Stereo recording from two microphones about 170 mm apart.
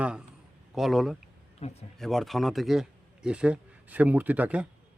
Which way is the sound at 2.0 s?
Centre (ahead or behind).